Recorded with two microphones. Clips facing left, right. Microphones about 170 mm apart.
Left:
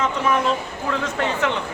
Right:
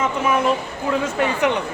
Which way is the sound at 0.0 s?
10° right (ahead or behind).